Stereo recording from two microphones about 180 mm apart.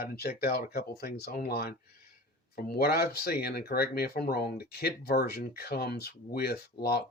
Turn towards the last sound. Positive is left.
turn(degrees=60)  # may be behind; listen again after turning